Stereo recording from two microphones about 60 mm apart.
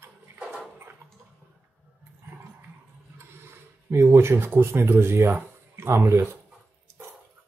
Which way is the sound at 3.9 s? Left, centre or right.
Right.